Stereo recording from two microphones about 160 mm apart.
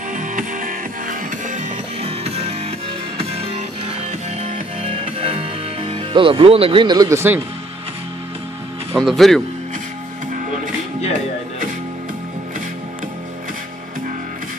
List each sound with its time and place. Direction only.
0.1 s music: 55° right (ahead or behind); by 7.4 s 15° right (ahead or behind)
8.9 s speech: centre (ahead or behind)